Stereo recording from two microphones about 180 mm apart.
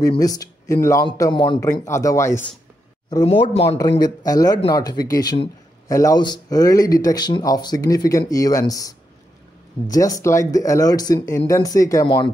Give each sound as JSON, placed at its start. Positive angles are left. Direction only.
{"t": 0.2, "sound": "a man's voice", "side_deg": 20}
{"t": 1.6, "sound": "speech", "side_deg": 15}
{"t": 3.3, "sound": "a man's voice", "side_deg": 25}